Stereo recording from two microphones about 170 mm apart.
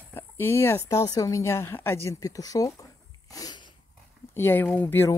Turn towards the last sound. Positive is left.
turn(degrees=15)  # may be behind; listen again after turning